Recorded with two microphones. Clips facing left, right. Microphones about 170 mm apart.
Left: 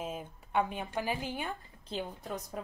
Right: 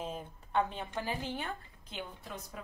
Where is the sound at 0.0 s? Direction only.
10° left (ahead or behind).